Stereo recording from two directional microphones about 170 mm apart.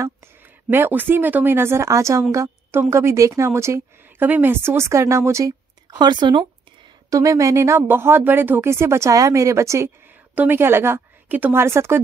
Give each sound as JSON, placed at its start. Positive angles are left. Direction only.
{"t": 0.7, "sound": "a woman's voice", "side_deg": -10}